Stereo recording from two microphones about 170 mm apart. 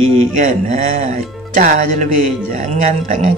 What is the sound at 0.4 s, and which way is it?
Speech, 50° right (ahead or behind).